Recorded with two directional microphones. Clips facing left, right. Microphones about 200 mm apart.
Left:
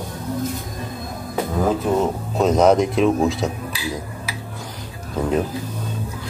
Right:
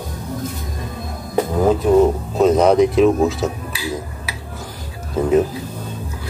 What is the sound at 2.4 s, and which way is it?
Speech, centre (ahead or behind).